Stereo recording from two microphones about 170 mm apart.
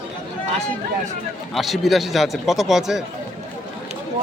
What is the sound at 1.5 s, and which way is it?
Speech, centre (ahead or behind).